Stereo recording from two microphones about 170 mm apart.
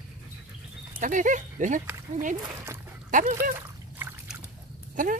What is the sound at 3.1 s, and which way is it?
Dog, 50° right (ahead or behind).